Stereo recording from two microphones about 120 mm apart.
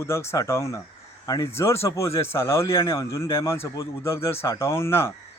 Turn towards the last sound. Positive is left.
turn(degrees=20)  # may be behind; listen again after turning